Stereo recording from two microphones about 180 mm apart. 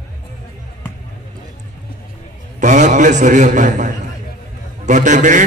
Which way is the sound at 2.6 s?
45° right (ahead or behind).